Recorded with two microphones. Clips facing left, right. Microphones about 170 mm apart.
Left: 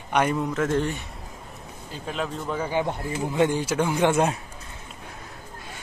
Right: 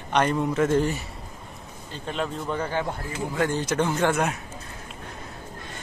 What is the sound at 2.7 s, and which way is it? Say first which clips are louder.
Speech: left 3 dB; 20° left (ahead or behind).